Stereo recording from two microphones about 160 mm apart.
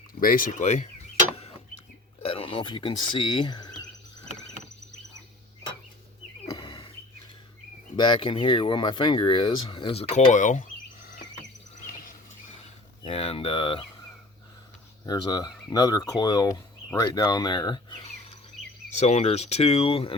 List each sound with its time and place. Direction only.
0.2 s speech: 60° left (ahead or behind)
2.2 s speech: 35° left (ahead or behind)
6.6 s wild animals: 30° left (ahead or behind)
7.9 s speech: 30° left (ahead or behind); by 10.7 s 50° left (ahead or behind)
13.0 s speech: 40° left (ahead or behind)
15.0 s speech: 25° left (ahead or behind)
18.9 s speech: 45° left (ahead or behind)